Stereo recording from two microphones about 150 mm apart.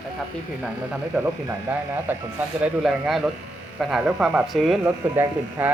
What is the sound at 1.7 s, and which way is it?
Speech, 10° right (ahead or behind).